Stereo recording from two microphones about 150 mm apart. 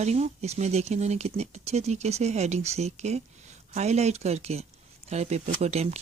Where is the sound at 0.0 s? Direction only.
45° right (ahead or behind).